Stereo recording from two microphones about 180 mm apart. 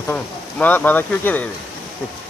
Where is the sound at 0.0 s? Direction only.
10° left (ahead or behind).